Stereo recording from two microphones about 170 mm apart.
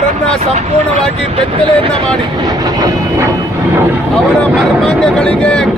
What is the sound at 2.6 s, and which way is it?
Vehicle, 20° right (ahead or behind).